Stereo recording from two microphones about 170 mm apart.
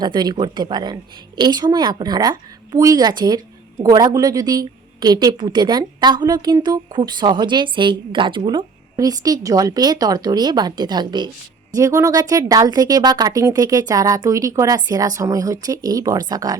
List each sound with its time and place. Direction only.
0.0 s a woman's voice: 25° right (ahead or behind)